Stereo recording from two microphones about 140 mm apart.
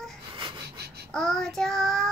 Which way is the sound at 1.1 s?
5° left (ahead or behind).